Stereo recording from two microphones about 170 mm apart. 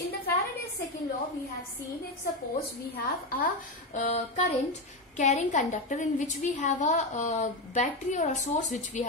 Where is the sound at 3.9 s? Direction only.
45° left (ahead or behind).